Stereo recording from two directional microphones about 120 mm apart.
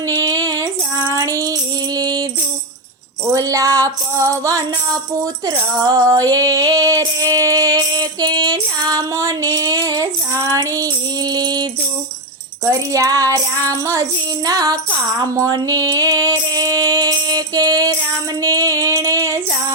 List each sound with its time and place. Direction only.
0.2 s female singing: 30° right (ahead or behind)
3.3 s a sound: 25° right (ahead or behind)
5.8 s music: 30° right (ahead or behind)